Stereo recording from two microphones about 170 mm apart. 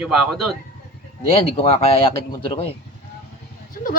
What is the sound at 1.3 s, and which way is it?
Speech, 35° left (ahead or behind).